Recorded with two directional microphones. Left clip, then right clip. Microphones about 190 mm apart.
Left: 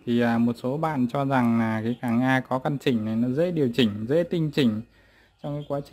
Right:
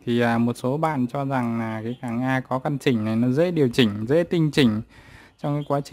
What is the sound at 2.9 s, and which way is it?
Speech, 25° right (ahead or behind).